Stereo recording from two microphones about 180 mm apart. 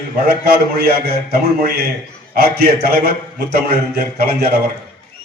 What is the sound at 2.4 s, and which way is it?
A man's voice, 60° right (ahead or behind).